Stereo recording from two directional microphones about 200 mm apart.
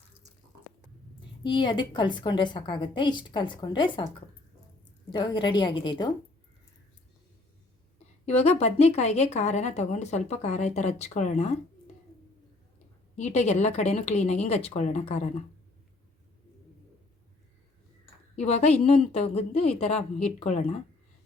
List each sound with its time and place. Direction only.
1.5 s a woman's voice: 25° left (ahead or behind)
5.1 s a woman's voice: 20° left (ahead or behind)
8.3 s speech: 30° left (ahead or behind)
13.1 s speech: 35° left (ahead or behind)
18.3 s speech: 35° left (ahead or behind)